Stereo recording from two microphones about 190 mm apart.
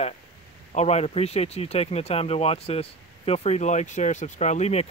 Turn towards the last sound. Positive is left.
turn(degrees=35)  # may be behind; listen again after turning